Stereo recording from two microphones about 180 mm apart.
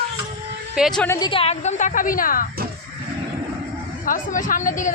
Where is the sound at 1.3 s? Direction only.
35° left (ahead or behind); by 2.5 s 50° left (ahead or behind).